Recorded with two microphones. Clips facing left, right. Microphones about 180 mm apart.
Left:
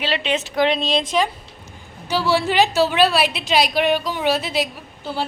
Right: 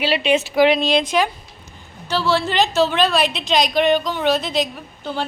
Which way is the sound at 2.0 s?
10° left (ahead or behind).